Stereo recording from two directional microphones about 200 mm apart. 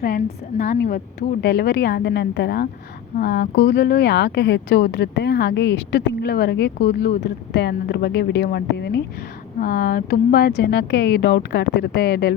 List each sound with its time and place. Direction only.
0.0 s a woman's voice: 50° left (ahead or behind)
9.6 s speech: 45° left (ahead or behind)